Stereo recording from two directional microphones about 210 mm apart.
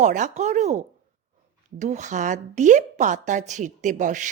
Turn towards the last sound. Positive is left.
turn(degrees=-35)  # may be behind; listen again after turning